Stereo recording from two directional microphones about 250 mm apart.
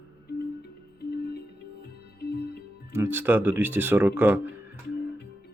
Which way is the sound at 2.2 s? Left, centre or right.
Left.